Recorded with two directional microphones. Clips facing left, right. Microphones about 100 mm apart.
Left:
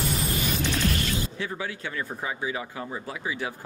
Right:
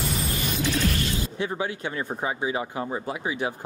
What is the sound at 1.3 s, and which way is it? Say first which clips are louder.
Speech: right 4 dB; 25° right (ahead or behind).